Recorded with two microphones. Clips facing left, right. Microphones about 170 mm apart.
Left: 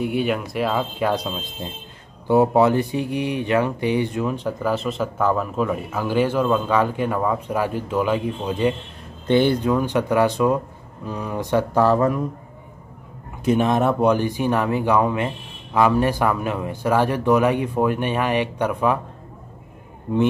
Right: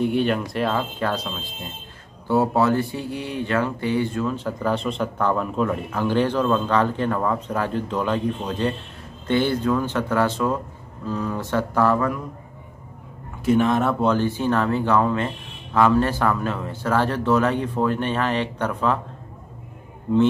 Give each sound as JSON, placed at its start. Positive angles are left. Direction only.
{"t": 0.0, "sound": "speech", "side_deg": 5}
{"t": 4.6, "sound": "speech", "side_deg": 5}
{"t": 13.4, "sound": "speech", "side_deg": 20}